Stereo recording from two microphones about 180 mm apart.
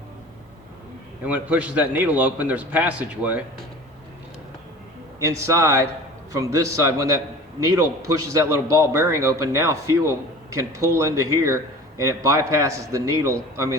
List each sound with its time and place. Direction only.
1.2 s a man's voice: 10° right (ahead or behind)
5.2 s a man's voice: 15° right (ahead or behind)